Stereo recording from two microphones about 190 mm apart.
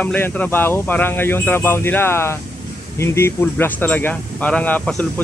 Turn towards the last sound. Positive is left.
turn(degrees=10)  # may be behind; listen again after turning